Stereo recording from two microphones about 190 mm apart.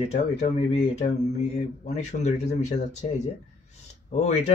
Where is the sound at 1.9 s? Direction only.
35° left (ahead or behind).